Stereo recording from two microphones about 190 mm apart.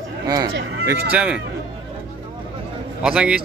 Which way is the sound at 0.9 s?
5° right (ahead or behind).